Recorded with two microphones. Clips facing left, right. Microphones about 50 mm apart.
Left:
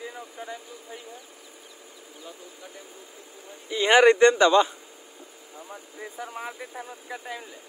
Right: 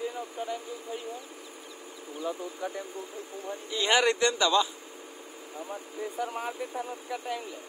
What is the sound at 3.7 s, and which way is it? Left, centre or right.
A man's voice, left.